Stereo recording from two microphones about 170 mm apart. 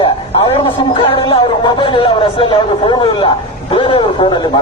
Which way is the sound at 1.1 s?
30° left (ahead or behind).